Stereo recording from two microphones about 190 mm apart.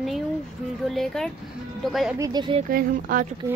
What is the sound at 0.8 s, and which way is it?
A woman's voice, centre (ahead or behind).